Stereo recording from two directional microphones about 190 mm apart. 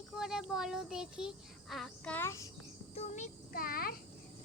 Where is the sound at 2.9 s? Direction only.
35° left (ahead or behind).